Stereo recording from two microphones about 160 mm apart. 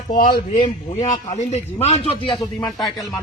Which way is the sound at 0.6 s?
45° left (ahead or behind).